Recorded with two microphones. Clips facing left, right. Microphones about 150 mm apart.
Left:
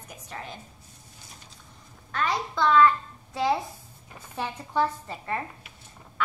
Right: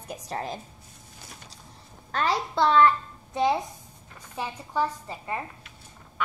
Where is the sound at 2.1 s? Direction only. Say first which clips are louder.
Right 2 dB; 30° right (ahead or behind).